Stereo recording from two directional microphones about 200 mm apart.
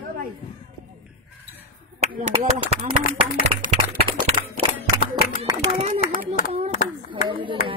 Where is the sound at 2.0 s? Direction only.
35° right (ahead or behind).